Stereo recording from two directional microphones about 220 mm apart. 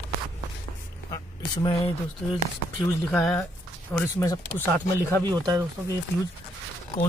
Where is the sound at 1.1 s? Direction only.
20° left (ahead or behind).